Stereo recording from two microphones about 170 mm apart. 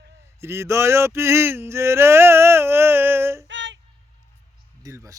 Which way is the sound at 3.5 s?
90° right.